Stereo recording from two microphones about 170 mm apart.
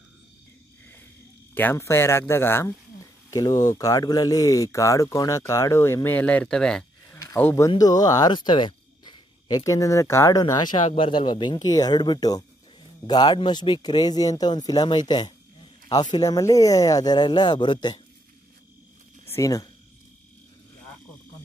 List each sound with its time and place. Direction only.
1.5 s speech: 10° left (ahead or behind)
19.2 s speech: 20° left (ahead or behind)